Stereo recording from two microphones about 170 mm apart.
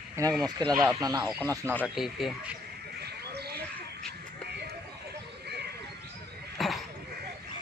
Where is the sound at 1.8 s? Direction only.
Centre (ahead or behind).